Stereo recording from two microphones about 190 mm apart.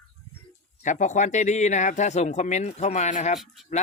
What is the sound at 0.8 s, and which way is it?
Speech, 40° left (ahead or behind).